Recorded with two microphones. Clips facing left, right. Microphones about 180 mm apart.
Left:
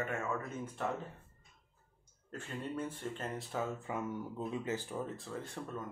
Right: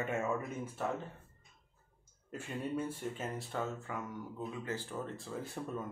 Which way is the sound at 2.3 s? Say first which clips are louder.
Right 3 dB; 10° right (ahead or behind).